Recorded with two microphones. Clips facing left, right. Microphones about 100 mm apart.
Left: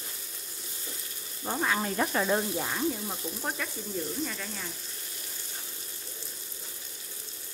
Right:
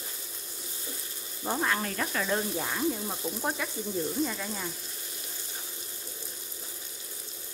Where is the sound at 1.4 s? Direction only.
Centre (ahead or behind).